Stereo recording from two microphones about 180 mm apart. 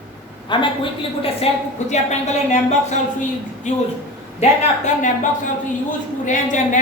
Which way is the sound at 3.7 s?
40° left (ahead or behind).